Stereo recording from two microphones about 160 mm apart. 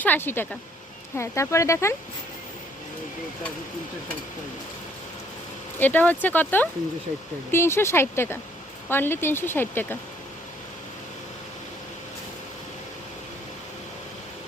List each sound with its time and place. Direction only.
0.0 s speech: 10° left (ahead or behind)
5.8 s speech: 10° left (ahead or behind)